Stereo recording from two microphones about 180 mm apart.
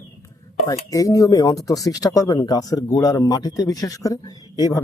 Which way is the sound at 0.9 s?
20° left (ahead or behind).